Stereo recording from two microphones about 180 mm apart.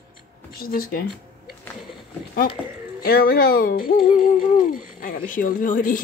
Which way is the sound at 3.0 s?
55° left (ahead or behind).